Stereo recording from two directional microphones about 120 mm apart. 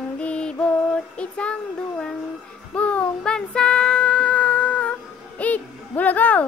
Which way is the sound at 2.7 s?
10° left (ahead or behind).